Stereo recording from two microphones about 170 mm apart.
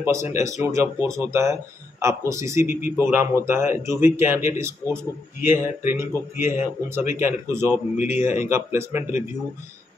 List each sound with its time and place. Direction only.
0.0 s speech: 15° right (ahead or behind)